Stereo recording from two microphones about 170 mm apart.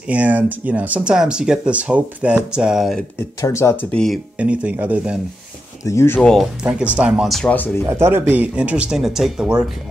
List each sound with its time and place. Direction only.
0.1 s speech: 10° right (ahead or behind)
3.3 s speech: 15° left (ahead or behind)
3.9 s speech: 5° left (ahead or behind)
4.4 s speech: 10° right (ahead or behind)
5.9 s speech: 15° left (ahead or behind)
6.6 s speech: 5° right (ahead or behind); by 7.7 s 10° left (ahead or behind)
7.8 s speech: 15° right (ahead or behind)